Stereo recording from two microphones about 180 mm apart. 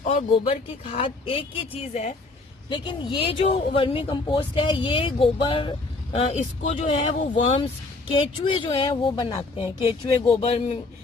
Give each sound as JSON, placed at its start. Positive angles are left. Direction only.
{"t": 0.0, "sound": "speech", "side_deg": 40}
{"t": 2.6, "sound": "speech", "side_deg": 25}
{"t": 6.1, "sound": "speech", "side_deg": 40}